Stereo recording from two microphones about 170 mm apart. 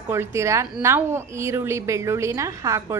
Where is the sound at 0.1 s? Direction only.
15° right (ahead or behind).